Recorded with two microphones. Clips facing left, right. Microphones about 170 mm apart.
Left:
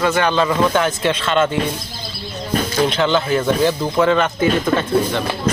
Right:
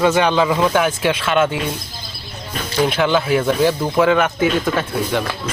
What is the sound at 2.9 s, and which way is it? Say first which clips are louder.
Speech: even; 10° right (ahead or behind).